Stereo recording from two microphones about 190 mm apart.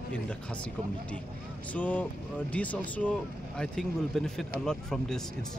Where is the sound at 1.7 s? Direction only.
10° left (ahead or behind).